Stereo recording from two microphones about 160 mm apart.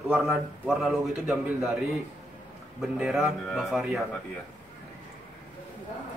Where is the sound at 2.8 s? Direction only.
5° right (ahead or behind).